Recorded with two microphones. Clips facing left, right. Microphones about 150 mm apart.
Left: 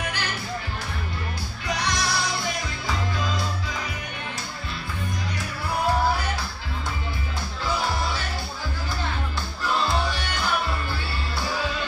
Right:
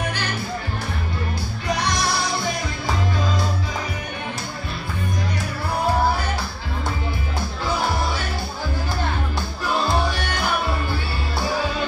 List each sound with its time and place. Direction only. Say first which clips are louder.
1.8 s music: right 2 dB; 55° right (ahead or behind)